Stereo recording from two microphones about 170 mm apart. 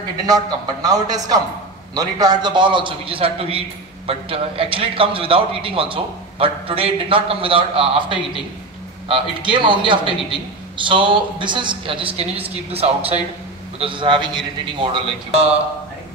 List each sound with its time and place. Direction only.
0.3 s a man's voice: 20° right (ahead or behind)